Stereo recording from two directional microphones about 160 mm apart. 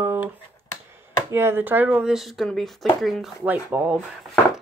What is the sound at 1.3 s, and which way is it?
Speech, 15° right (ahead or behind).